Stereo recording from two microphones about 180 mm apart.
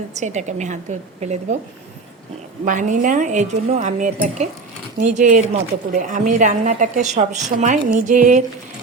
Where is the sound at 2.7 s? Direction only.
45° right (ahead or behind).